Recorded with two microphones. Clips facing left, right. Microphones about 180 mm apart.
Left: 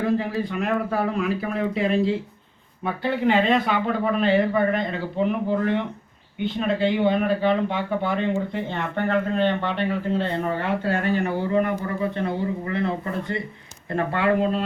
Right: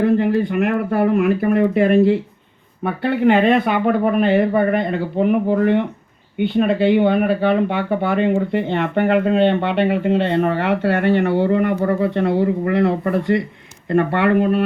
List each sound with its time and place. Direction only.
0.0 s speech: 60° right (ahead or behind)